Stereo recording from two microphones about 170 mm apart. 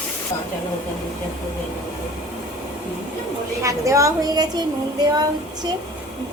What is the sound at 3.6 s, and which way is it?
A woman's voice, 20° right (ahead or behind).